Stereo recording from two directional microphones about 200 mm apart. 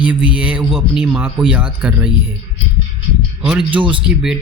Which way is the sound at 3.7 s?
25° right (ahead or behind).